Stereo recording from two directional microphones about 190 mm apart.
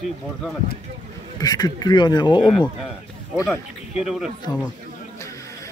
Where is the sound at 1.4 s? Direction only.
20° left (ahead or behind).